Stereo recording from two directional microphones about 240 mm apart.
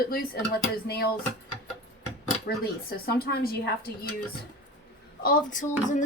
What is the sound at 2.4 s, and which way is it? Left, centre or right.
Speech, left.